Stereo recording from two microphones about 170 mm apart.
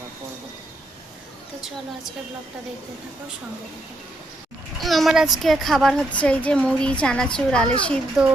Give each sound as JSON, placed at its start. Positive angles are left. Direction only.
{"t": 4.8, "sound": "a woman's voice", "side_deg": 0}